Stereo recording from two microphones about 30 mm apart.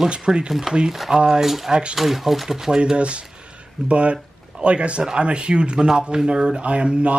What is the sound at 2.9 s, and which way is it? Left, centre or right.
Speech, right.